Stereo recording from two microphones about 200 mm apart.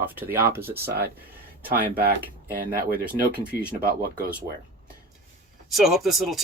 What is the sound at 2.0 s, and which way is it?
Speech, 50° right (ahead or behind).